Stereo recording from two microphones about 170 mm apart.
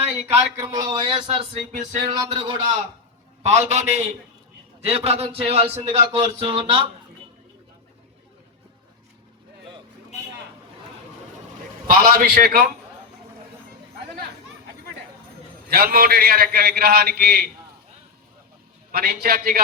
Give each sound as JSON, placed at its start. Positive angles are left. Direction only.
{"t": 0.3, "sound": "speech", "side_deg": -15}
{"t": 2.1, "sound": "a man's voice", "side_deg": -25}
{"t": 3.4, "sound": "speech", "side_deg": -40}
{"t": 11.9, "sound": "a man's voice", "side_deg": -60}
{"t": 15.7, "sound": "a man's voice", "side_deg": -65}
{"t": 18.9, "sound": "a man's voice", "side_deg": -65}